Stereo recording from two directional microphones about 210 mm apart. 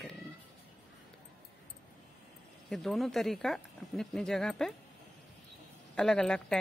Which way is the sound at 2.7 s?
Centre (ahead or behind).